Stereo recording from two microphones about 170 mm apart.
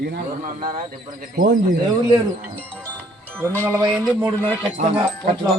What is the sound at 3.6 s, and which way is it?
Speech, 15° right (ahead or behind).